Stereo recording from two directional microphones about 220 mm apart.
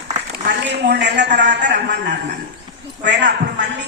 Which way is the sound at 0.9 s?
50° right (ahead or behind).